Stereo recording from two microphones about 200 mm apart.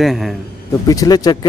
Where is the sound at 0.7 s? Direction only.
15° left (ahead or behind).